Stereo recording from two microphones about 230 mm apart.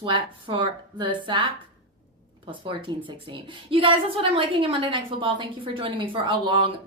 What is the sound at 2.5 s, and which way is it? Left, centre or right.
A woman's voice, right.